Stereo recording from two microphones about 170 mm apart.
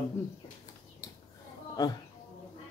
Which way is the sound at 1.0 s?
20° left (ahead or behind).